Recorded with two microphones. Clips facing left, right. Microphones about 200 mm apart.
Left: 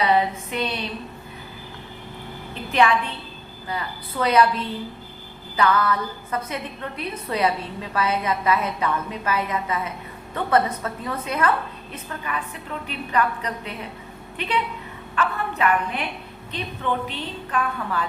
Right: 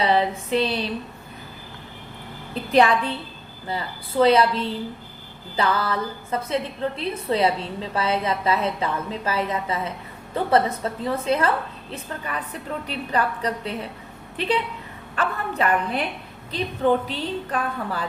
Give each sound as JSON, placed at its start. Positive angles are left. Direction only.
{"t": 0.0, "sound": "a woman's voice", "side_deg": -30}
{"t": 3.7, "sound": "a woman's voice", "side_deg": -30}